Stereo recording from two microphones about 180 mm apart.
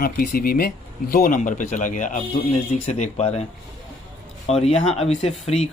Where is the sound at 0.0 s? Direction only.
55° left (ahead or behind); by 3.4 s 35° left (ahead or behind).